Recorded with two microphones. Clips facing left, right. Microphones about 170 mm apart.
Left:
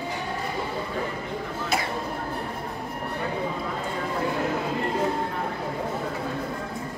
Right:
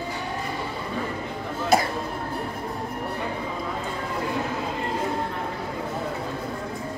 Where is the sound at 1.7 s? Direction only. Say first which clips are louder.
Right 7 dB; 40° right (ahead or behind).